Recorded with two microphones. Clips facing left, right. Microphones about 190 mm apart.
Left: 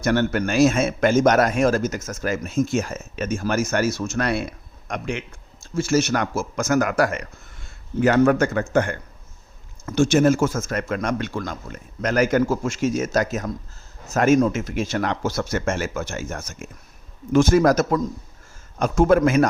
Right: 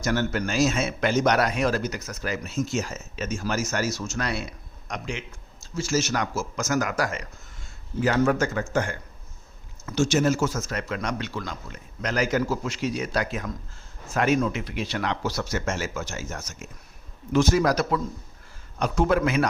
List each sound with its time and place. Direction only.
0.0 s a man's voice: 60° left (ahead or behind)